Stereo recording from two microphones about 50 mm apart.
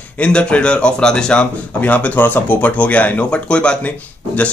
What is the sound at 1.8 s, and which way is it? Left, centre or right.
Speech, left.